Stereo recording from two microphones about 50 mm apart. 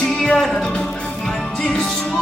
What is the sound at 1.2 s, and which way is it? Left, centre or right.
Music, centre.